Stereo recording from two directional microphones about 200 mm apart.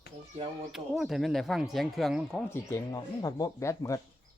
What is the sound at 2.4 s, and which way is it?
Speech, 15° left (ahead or behind).